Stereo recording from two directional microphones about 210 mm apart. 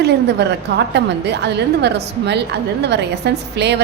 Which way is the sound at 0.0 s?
55° right (ahead or behind).